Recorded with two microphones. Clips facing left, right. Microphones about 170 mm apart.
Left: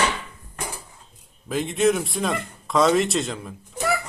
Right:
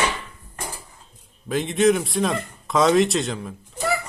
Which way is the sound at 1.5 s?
Centre (ahead or behind).